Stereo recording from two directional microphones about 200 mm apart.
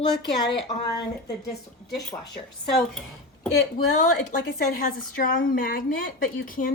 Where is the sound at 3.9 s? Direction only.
40° left (ahead or behind).